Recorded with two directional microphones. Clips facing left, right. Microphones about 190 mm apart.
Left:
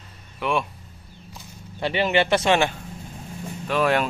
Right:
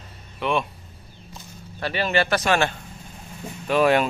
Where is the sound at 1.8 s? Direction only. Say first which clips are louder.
Left 2 dB; 20° left (ahead or behind).